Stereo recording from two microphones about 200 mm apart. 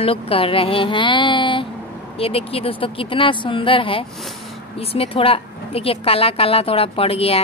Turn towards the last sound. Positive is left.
turn(degrees=30)  # may be behind; listen again after turning